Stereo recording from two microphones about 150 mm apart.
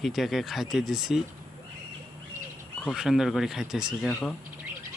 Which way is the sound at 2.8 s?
Centre (ahead or behind).